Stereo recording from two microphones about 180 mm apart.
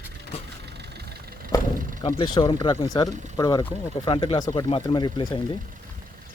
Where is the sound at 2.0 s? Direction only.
30° left (ahead or behind).